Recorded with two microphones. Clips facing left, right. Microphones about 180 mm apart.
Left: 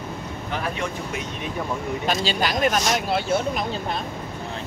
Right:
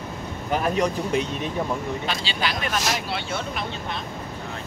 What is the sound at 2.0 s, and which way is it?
Speech, 45° left (ahead or behind).